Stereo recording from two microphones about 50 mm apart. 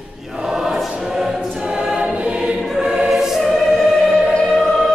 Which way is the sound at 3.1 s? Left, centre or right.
Centre.